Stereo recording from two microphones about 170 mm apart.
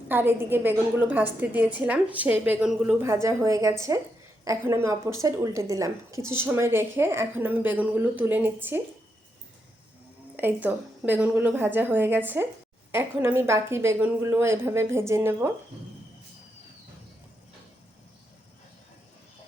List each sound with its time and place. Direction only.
0.1 s a woman's voice: 10° right (ahead or behind)
10.3 s a woman's voice: 10° right (ahead or behind)